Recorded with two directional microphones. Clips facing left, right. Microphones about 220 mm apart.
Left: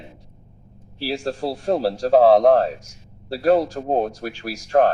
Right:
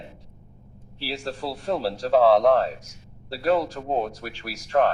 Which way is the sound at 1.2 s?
45° left (ahead or behind).